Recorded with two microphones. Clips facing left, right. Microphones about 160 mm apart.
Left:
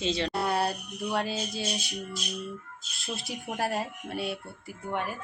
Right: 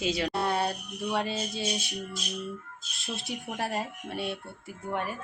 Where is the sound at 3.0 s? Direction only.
Centre (ahead or behind).